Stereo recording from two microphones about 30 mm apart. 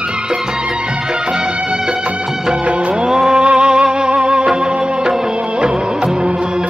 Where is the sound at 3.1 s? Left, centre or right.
Right.